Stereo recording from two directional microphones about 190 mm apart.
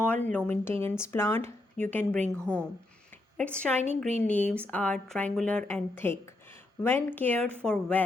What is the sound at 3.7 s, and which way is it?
A woman's voice, centre (ahead or behind).